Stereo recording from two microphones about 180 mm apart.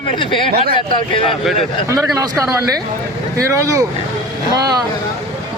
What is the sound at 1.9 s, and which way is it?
Speech, 15° right (ahead or behind).